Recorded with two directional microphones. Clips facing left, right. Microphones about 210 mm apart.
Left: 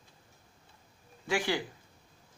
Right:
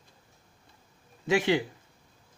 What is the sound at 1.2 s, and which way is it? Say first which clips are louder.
Speech: right 6 dB; 20° right (ahead or behind).